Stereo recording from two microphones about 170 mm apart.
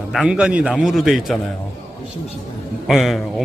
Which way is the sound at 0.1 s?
5° right (ahead or behind).